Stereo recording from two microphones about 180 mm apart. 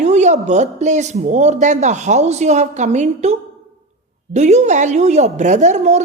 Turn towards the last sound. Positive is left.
turn(degrees=-40)  # may be behind; listen again after turning